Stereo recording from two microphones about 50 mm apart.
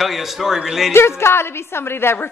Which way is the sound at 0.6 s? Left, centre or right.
Centre.